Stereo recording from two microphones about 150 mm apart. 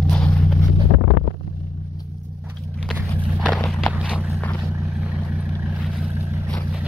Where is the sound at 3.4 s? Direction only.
5° left (ahead or behind).